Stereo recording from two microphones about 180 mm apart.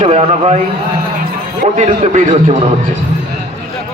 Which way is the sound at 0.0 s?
35° right (ahead or behind).